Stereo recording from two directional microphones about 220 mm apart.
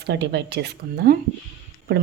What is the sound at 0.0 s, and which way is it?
A woman's voice, 50° right (ahead or behind).